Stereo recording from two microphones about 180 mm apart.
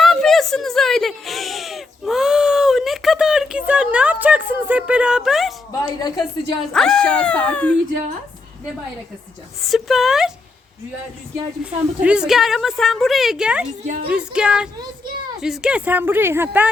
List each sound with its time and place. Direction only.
0.0 s a sound: centre (ahead or behind)
6.0 s speech: 20° left (ahead or behind)
6.7 s a woman's voice: 5° left (ahead or behind)
9.6 s speech: centre (ahead or behind)
11.6 s a woman's voice: 5° right (ahead or behind)
13.8 s a woman's voice: 45° right (ahead or behind)
14.1 s a woman's voice: 5° right (ahead or behind)